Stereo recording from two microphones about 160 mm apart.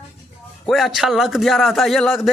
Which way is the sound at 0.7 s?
Centre (ahead or behind).